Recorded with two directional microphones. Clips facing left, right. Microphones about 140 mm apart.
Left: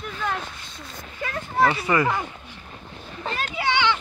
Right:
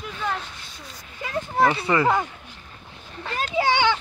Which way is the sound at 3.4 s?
40° right (ahead or behind).